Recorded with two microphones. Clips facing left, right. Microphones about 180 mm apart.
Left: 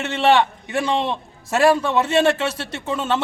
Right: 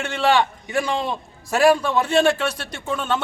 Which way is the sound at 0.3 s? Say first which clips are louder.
Left 2 dB; centre (ahead or behind).